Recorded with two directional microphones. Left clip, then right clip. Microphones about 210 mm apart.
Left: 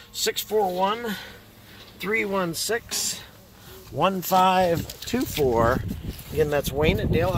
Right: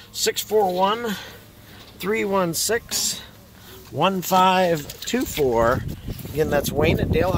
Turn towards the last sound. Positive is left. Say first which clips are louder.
# right 2 dB
turn(degrees=0)  # may be behind; listen again after turning